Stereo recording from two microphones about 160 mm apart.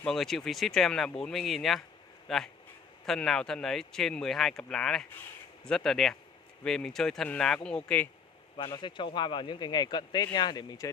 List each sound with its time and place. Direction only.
0.0 s speech: centre (ahead or behind)
8.5 s a man's voice: 30° left (ahead or behind)